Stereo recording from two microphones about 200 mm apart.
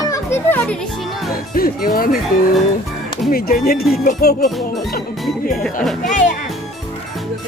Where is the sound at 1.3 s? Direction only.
45° left (ahead or behind).